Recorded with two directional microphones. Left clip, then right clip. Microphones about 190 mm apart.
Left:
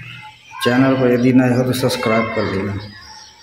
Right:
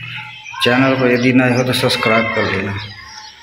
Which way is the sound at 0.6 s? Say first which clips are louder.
Right 2 dB; 15° left (ahead or behind).